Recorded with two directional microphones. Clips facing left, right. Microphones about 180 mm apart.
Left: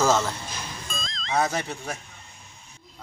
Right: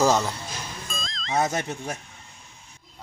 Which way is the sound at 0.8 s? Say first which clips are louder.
Even; centre (ahead or behind).